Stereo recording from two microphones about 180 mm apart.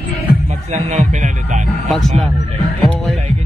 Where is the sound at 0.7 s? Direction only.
45° right (ahead or behind).